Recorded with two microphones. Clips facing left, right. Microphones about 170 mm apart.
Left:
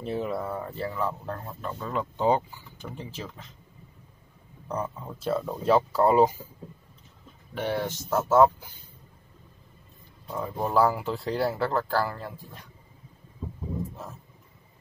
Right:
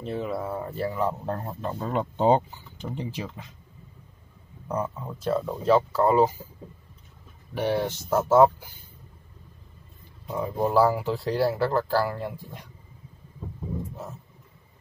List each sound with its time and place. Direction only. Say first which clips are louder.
0.0 s speech: even; centre (ahead or behind); by 1.3 s 20° right (ahead or behind)
1.3 s speech: right 4 dB; 30° right (ahead or behind); by 3.4 s 15° right (ahead or behind)
4.6 s speech: right 3 dB; 5° right (ahead or behind)
5.2 s speech: right 1 dB; 5° left (ahead or behind)
7.5 s speech: right 3 dB; 15° right (ahead or behind)
10.2 s speech: right 4 dB; 10° right (ahead or behind)
12.2 s speech: right 5 dB; 15° right (ahead or behind)